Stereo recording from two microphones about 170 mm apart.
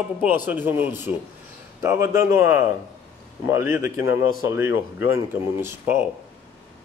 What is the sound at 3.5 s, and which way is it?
Speech, 15° right (ahead or behind).